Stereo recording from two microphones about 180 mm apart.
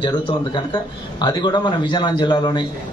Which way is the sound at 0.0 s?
25° left (ahead or behind).